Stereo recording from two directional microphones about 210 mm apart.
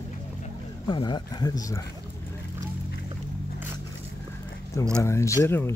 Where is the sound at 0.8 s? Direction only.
20° left (ahead or behind).